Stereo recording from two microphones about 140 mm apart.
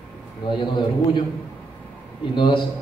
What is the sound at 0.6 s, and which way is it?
Speech, 35° left (ahead or behind).